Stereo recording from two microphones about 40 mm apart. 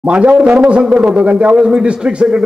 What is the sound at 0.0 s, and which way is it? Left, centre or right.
Speech, right.